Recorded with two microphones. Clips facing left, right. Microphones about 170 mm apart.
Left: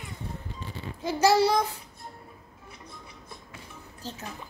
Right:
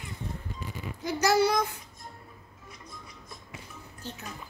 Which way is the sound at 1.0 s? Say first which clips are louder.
Left 2 dB; 30° left (ahead or behind).